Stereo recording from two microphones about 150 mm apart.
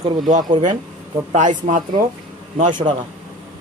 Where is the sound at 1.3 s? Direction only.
55° right (ahead or behind).